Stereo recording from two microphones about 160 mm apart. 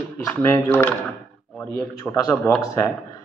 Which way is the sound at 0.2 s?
15° left (ahead or behind).